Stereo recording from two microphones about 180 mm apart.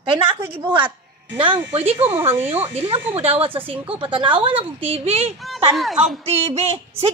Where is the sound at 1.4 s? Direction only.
30° right (ahead or behind).